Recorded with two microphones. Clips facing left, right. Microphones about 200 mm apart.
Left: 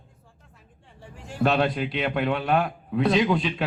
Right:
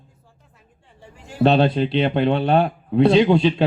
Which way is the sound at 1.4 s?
30° right (ahead or behind).